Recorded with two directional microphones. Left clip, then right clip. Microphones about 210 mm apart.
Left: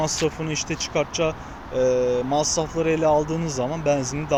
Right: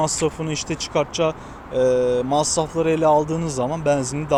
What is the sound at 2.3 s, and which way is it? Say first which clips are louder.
Speech: right 2 dB; 50° right (ahead or behind).